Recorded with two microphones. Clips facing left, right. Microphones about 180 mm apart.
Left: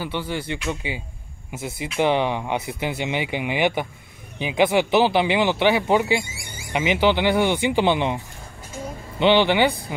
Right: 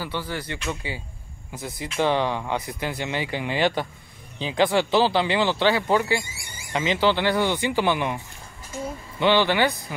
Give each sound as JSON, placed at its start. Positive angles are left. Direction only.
{"t": 0.0, "sound": "speech", "side_deg": 25}
{"t": 9.2, "sound": "speech", "side_deg": 20}